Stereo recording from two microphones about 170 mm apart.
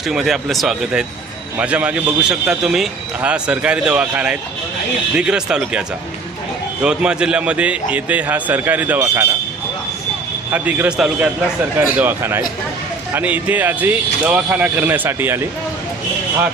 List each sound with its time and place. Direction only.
0.1 s a man's voice: centre (ahead or behind)
6.8 s a man's voice: 5° right (ahead or behind)
10.5 s a man's voice: 10° right (ahead or behind)